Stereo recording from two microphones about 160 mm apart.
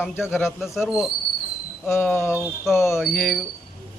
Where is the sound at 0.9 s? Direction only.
5° right (ahead or behind).